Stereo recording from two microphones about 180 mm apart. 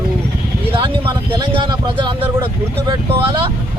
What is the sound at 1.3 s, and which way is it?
Speech, 25° right (ahead or behind).